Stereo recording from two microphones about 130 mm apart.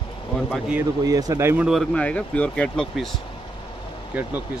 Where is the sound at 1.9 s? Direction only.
10° left (ahead or behind).